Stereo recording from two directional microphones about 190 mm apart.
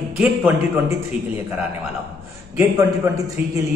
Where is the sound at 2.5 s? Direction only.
15° right (ahead or behind).